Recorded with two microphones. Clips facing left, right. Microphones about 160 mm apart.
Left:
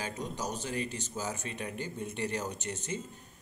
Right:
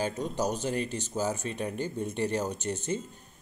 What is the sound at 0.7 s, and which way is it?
Speech, 35° right (ahead or behind).